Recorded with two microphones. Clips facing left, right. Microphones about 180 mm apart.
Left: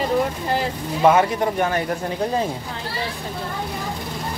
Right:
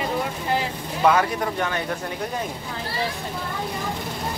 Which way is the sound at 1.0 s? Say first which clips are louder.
Left 3 dB; 25° left (ahead or behind).